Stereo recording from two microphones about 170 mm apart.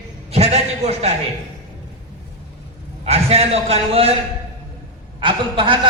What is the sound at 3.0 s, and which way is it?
A man's voice, 40° right (ahead or behind).